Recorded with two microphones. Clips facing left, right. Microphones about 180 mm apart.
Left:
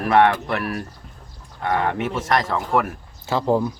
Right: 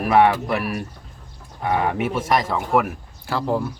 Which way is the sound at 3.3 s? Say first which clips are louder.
Left 3 dB; 20° left (ahead or behind).